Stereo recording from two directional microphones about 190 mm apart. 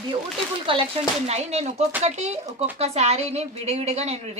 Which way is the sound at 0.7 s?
30° right (ahead or behind).